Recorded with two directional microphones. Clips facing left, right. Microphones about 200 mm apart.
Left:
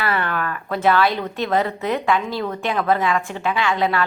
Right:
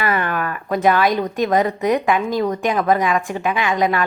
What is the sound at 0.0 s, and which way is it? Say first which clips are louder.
A woman's voice: right 2 dB; 15° right (ahead or behind).